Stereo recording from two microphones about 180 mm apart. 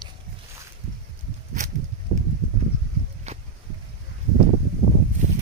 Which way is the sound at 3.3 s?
35° right (ahead or behind).